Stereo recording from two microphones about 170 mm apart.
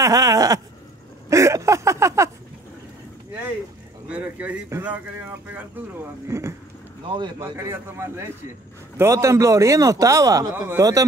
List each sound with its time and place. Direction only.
0.0 s a sound: 20° right (ahead or behind)
4.1 s speech: 10° right (ahead or behind)
6.2 s a man's voice: 15° right (ahead or behind)
7.1 s speech: 25° right (ahead or behind)
7.5 s a man's voice: 15° right (ahead or behind)